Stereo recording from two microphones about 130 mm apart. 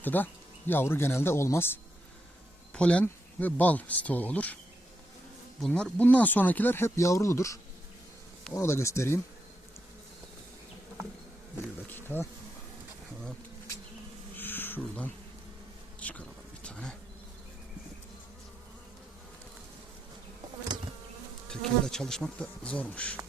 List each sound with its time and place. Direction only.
0.0 s speech: 15° left (ahead or behind)
5.5 s speech: 5° left (ahead or behind); by 9.1 s 20° left (ahead or behind)
11.9 s speech: 15° left (ahead or behind)
14.3 s insect: 15° left (ahead or behind)
16.0 s speech: 10° left (ahead or behind)
16.6 s bee: 5° left (ahead or behind)
21.5 s speech: 5° left (ahead or behind)